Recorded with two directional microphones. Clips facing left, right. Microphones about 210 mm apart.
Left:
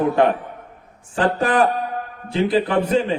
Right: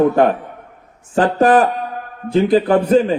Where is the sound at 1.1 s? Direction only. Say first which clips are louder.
Right 5 dB; 45° right (ahead or behind).